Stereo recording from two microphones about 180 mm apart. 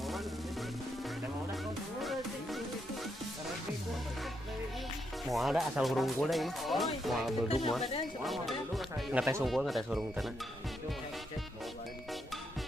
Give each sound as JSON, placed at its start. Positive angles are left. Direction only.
{"t": 5.2, "sound": "speech", "side_deg": 0}
{"t": 7.4, "sound": "speech", "side_deg": 35}
{"t": 8.2, "sound": "speech", "side_deg": 0}